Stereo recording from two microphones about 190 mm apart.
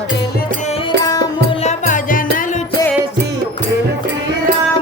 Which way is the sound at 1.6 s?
45° left (ahead or behind).